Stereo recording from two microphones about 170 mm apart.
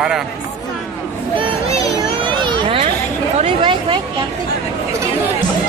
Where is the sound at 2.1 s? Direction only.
30° right (ahead or behind).